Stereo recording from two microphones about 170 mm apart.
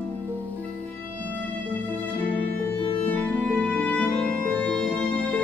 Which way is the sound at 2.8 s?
35° left (ahead or behind).